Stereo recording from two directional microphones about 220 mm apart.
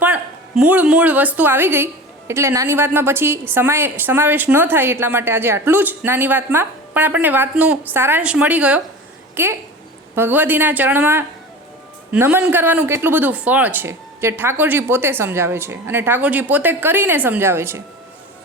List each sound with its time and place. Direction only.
0.0 s a woman's voice: 5° right (ahead or behind)